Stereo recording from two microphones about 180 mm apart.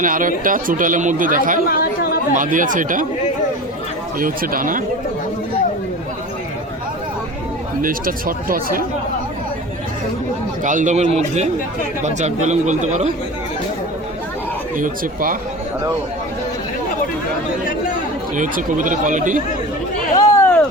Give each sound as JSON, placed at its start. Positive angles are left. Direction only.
{"t": 0.0, "sound": "speech", "side_deg": -50}
{"t": 1.7, "sound": "chatter", "side_deg": 60}
{"t": 2.3, "sound": "speech", "side_deg": -45}
{"t": 4.2, "sound": "speech", "side_deg": -50}
{"t": 7.8, "sound": "speech", "side_deg": -50}
{"t": 10.6, "sound": "speech", "side_deg": -45}
{"t": 14.8, "sound": "speech", "side_deg": -50}
{"t": 18.3, "sound": "speech", "side_deg": -45}
{"t": 20.1, "sound": "a sound", "side_deg": 15}